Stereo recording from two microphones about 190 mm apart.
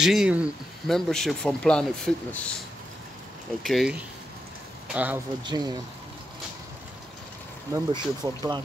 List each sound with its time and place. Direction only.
0.0 s speech: 5° right (ahead or behind)
3.6 s speech: centre (ahead or behind)
4.9 s speech: 10° right (ahead or behind)
5.5 s speech: 20° right (ahead or behind)
7.7 s speech: 20° right (ahead or behind)